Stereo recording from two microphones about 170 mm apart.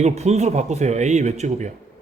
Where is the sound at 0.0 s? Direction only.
40° right (ahead or behind).